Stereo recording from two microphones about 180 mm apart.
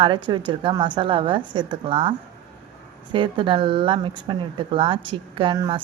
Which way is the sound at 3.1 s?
30° right (ahead or behind).